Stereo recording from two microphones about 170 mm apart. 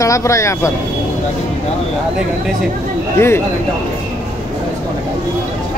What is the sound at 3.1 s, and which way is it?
Speech, 15° left (ahead or behind).